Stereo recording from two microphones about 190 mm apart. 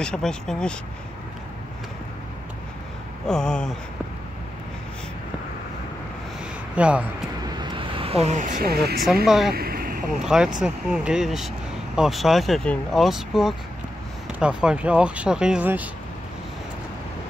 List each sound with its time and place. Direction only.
0.0 s speech: 5° left (ahead or behind)
3.3 s speech: 5° left (ahead or behind)
6.7 s speech: 5° right (ahead or behind)
7.4 s vehicle: 20° right (ahead or behind); by 9.0 s 55° right (ahead or behind)
9.0 s speech: centre (ahead or behind)
9.5 s vehicle: 50° right (ahead or behind)
10.2 s speech: 5° right (ahead or behind)